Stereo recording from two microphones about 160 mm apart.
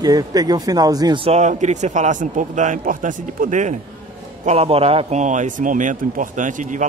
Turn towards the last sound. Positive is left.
turn(degrees=-55)  # may be behind; listen again after turning